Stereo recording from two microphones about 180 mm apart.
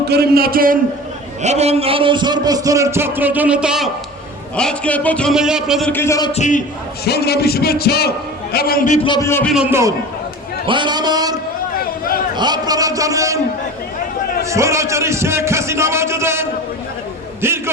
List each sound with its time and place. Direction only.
0.1 s a man's voice: 60° right (ahead or behind)
1.4 s a man's voice: 35° right (ahead or behind); by 5.9 s centre (ahead or behind)
5.9 s speech: 15° left (ahead or behind)
6.3 s a man's voice: 40° left (ahead or behind)
7.0 s a man's voice: 60° left (ahead or behind)
9.0 s speech: 20° left (ahead or behind)
9.5 s a man's voice: 5° right (ahead or behind)
10.7 s a man's voice: 25° right (ahead or behind)
14.5 s a man's voice: 15° right (ahead or behind)
17.4 s a sound: 15° right (ahead or behind)